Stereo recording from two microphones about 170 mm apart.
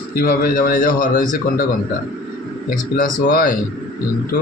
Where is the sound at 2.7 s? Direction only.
55° left (ahead or behind).